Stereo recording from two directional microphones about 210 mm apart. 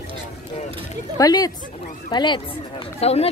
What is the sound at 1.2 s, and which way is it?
Speech, 15° left (ahead or behind).